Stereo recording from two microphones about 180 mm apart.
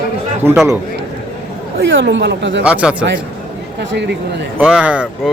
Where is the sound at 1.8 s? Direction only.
80° right.